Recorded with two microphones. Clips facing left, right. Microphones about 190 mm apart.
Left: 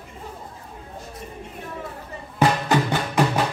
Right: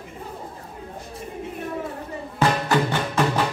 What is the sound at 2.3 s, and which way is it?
Music, 15° left (ahead or behind).